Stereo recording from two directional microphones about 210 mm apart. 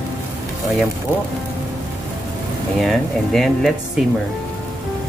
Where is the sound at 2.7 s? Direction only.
Centre (ahead or behind).